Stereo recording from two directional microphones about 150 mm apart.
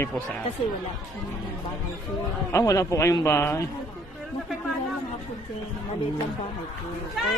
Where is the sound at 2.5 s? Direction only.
20° left (ahead or behind).